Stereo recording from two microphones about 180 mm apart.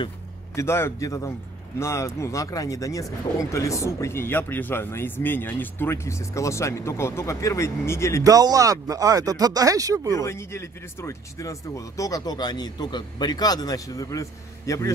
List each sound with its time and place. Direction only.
0.6 s speech: 15° left (ahead or behind)
8.2 s speech: 20° right (ahead or behind)
10.1 s speech: 15° left (ahead or behind)